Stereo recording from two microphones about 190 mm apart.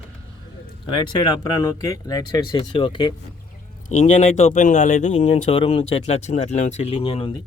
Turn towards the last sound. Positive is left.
turn(degrees=30)  # may be behind; listen again after turning